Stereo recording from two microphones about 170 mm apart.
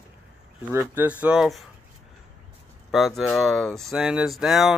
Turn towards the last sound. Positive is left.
turn(degrees=0)  # may be behind; listen again after turning